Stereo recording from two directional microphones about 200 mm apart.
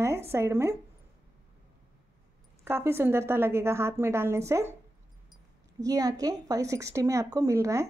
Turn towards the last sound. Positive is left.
turn(degrees=-15)  # may be behind; listen again after turning